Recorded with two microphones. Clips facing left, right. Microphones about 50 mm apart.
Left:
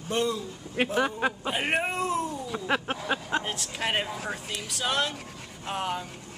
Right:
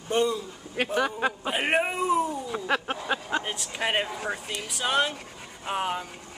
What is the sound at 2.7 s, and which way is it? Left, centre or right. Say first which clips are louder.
Speech: even; centre.